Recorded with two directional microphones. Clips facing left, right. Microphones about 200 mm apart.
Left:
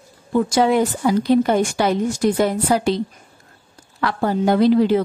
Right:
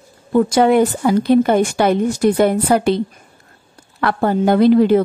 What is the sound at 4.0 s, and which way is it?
A woman's voice, 55° right (ahead or behind).